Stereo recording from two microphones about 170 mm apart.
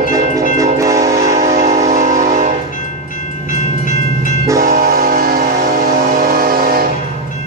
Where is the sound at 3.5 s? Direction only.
50° left (ahead or behind).